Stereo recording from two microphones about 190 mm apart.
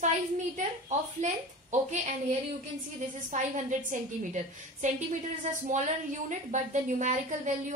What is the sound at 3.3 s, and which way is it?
A woman's voice, 40° right (ahead or behind).